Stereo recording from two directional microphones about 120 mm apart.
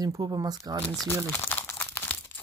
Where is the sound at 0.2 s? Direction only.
35° right (ahead or behind).